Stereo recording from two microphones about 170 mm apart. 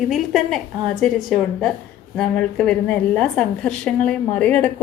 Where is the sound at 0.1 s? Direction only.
Centre (ahead or behind).